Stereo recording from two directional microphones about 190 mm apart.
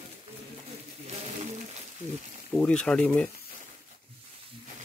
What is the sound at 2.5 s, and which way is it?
Speech, 5° left (ahead or behind).